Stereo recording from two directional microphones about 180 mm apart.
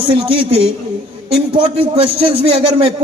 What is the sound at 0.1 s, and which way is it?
A man's voice, 30° right (ahead or behind).